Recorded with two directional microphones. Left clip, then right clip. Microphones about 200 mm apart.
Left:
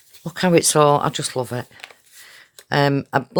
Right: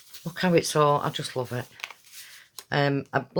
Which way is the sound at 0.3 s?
40° left (ahead or behind).